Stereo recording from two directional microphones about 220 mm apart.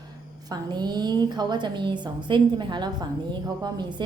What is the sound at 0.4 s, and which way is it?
A woman's voice, 20° right (ahead or behind).